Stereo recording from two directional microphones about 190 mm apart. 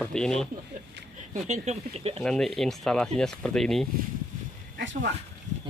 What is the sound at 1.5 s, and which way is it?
Speech, 35° right (ahead or behind).